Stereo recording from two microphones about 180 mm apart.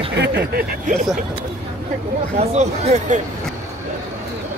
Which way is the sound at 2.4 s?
35° right (ahead or behind).